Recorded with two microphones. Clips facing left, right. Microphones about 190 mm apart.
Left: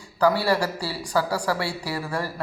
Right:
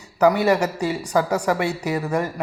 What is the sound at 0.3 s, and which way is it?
Speech, 20° right (ahead or behind).